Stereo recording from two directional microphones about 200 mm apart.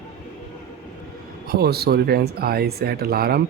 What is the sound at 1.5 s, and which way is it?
Speech, 50° right (ahead or behind).